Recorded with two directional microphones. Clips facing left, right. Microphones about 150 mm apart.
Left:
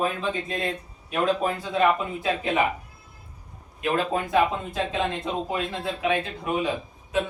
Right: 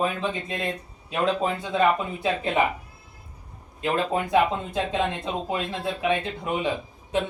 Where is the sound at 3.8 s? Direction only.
25° right (ahead or behind).